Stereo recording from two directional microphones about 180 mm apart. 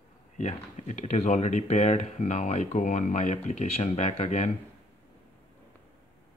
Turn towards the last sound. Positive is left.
turn(degrees=40)  # may be behind; listen again after turning